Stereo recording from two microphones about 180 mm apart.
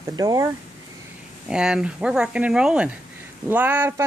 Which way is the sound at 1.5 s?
5° right (ahead or behind).